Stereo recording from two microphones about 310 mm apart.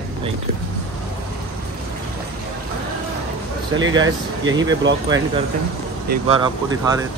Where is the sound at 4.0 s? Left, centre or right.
Right.